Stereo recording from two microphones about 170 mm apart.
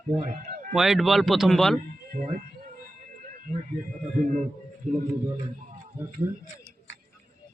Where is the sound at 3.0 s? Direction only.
50° right (ahead or behind).